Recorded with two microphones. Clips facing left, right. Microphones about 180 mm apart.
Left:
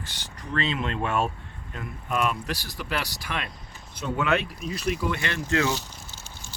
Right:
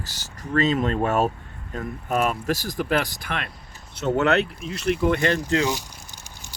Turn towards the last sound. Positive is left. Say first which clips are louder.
# even
turn(degrees=-15)  # may be behind; listen again after turning